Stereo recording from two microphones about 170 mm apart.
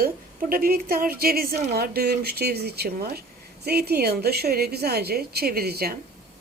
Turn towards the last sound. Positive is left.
turn(degrees=-65)  # may be behind; listen again after turning